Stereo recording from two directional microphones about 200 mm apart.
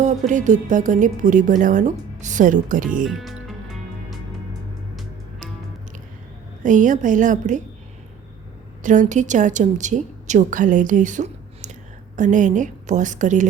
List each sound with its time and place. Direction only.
0.0 s a woman's voice: 40° right (ahead or behind)
3.0 s speech: centre (ahead or behind)
6.6 s a woman's voice: 40° right (ahead or behind)
8.8 s a woman's voice: 40° right (ahead or behind)